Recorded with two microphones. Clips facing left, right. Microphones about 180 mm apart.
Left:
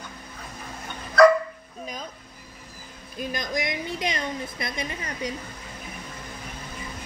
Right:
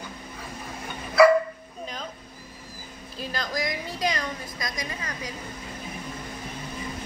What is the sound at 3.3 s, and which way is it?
A woman's voice, 20° left (ahead or behind).